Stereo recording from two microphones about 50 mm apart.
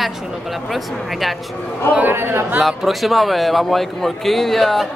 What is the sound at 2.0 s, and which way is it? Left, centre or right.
Speech, right.